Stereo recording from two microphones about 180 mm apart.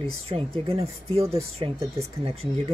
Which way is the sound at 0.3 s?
35° right (ahead or behind).